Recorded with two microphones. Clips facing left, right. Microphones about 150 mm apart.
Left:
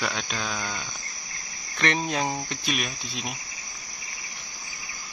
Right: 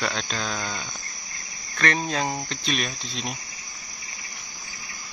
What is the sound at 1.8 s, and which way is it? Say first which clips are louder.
Speech: right 1 dB; 20° left (ahead or behind).